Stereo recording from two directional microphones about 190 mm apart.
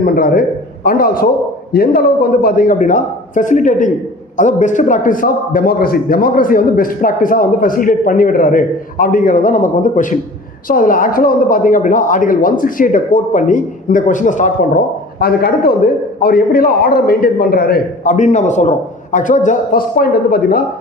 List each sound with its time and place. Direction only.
0.0 s a man's voice: 45° left (ahead or behind)
15.2 s a man's voice: 55° left (ahead or behind)